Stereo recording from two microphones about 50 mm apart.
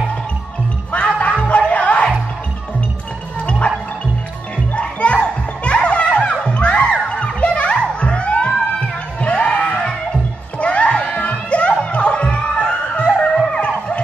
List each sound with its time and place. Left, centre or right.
0.9 s music: left
3.4 s music: left
4.7 s music: left